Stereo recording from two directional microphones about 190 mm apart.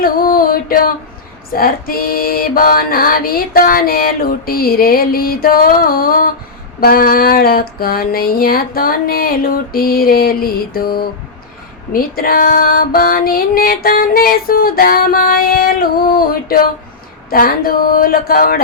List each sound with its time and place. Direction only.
0.0 s music: 50° left (ahead or behind)
1.5 s female singing: 50° left (ahead or behind)